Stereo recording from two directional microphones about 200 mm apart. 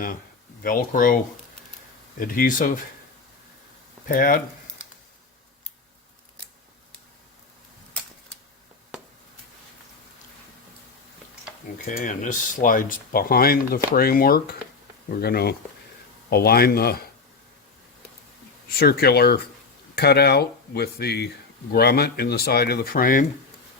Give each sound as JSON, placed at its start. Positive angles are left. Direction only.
{"t": 0.6, "sound": "speech", "side_deg": 45}
{"t": 4.1, "sound": "speech", "side_deg": 45}
{"t": 11.9, "sound": "speech", "side_deg": 40}
{"t": 18.8, "sound": "speech", "side_deg": 50}